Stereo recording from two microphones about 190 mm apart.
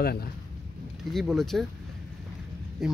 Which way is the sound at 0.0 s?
55° left (ahead or behind).